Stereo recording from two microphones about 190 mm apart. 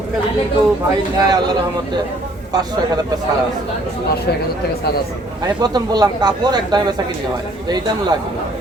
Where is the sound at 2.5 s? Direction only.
20° right (ahead or behind).